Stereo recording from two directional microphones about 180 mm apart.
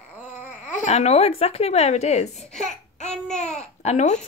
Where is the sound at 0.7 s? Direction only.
40° left (ahead or behind).